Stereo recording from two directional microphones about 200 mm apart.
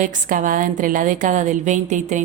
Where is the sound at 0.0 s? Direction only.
40° right (ahead or behind).